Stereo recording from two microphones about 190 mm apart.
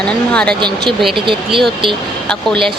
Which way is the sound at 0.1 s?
5° left (ahead or behind).